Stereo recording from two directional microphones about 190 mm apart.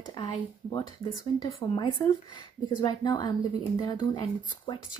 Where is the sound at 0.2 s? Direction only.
25° left (ahead or behind).